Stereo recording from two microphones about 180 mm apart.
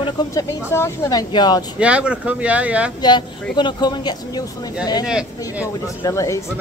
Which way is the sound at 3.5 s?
25° left (ahead or behind).